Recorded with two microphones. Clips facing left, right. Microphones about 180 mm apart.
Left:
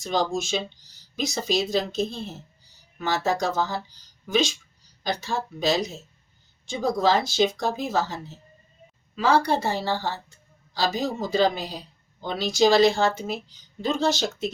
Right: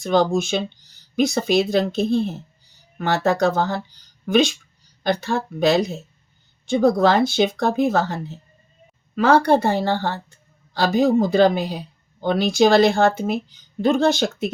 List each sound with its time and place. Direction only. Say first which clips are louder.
0.0 s speech: right 7 dB; 60° right (ahead or behind)